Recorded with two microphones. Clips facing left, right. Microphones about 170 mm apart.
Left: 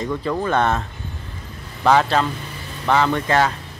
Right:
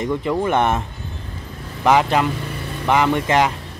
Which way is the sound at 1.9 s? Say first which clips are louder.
Right 1 dB; 15° right (ahead or behind).